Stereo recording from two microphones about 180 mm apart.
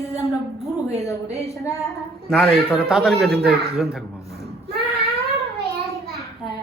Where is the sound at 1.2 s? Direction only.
35° right (ahead or behind).